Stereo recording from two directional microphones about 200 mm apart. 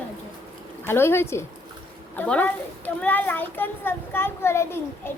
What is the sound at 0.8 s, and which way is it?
A child's voice, 10° left (ahead or behind).